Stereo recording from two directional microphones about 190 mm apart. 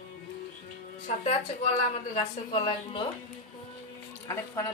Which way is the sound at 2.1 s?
30° left (ahead or behind).